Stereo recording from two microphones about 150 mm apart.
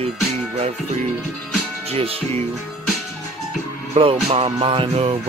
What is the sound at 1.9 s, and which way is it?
Music, 40° right (ahead or behind).